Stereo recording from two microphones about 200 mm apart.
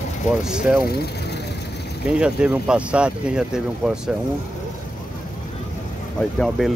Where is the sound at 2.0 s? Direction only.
5° right (ahead or behind).